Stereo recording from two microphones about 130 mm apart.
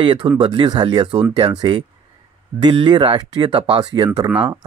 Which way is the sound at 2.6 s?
35° right (ahead or behind).